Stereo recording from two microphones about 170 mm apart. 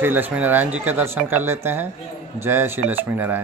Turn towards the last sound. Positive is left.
turn(degrees=-10)  # may be behind; listen again after turning